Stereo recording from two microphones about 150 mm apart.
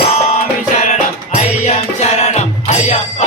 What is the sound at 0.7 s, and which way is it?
Music, 50° left (ahead or behind).